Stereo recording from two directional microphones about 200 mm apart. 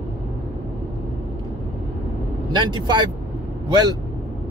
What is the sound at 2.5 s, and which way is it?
Speech, 20° right (ahead or behind).